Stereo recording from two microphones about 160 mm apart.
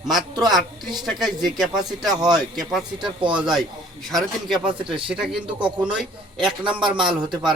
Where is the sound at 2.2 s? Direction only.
25° right (ahead or behind).